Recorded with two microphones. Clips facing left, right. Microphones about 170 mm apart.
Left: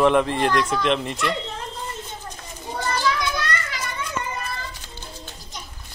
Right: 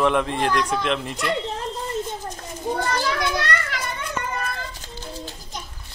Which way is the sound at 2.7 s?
55° right (ahead or behind).